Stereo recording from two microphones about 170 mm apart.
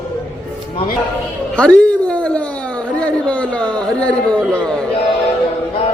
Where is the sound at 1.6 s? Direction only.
5° left (ahead or behind).